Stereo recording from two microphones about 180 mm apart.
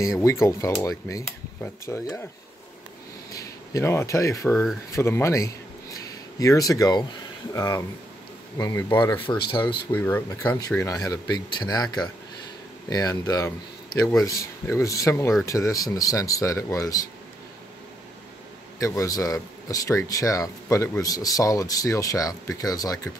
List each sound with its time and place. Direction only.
0.0 s speech: 15° left (ahead or behind)
3.3 s speech: 20° left (ahead or behind)
9.8 s speech: 10° left (ahead or behind)
18.8 s speech: 15° left (ahead or behind)